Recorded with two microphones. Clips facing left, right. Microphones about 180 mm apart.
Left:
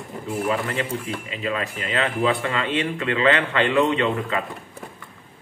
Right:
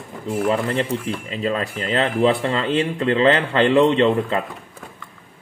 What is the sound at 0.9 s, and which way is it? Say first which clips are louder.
A man's voice: right 4 dB; 30° right (ahead or behind).